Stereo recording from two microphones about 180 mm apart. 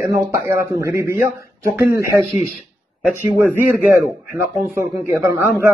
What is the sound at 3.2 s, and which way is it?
Speech, 10° right (ahead or behind).